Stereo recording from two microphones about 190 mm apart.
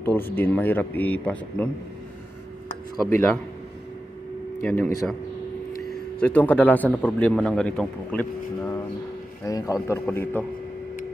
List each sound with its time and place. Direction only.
0.0 s speech: 10° left (ahead or behind)
3.1 s speech: 10° left (ahead or behind)
4.6 s speech: 10° left (ahead or behind)